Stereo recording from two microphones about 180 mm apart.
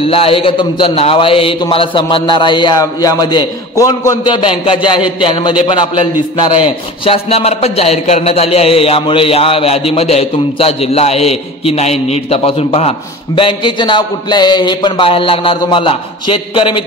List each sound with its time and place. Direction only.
0.0 s a man's voice: 30° left (ahead or behind)